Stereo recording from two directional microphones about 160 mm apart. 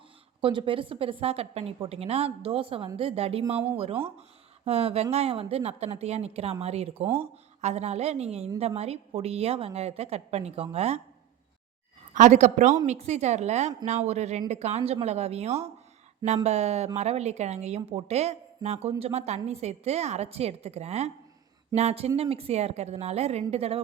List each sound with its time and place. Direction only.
0.4 s a woman's voice: 35° right (ahead or behind)
4.6 s a woman's voice: 40° right (ahead or behind)
12.1 s a woman's voice: 50° right (ahead or behind)